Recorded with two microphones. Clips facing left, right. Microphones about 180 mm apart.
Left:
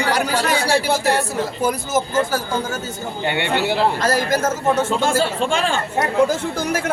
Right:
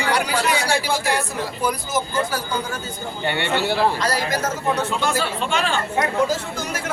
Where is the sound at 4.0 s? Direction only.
50° left (ahead or behind).